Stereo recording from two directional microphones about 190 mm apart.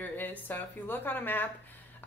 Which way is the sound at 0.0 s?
10° left (ahead or behind).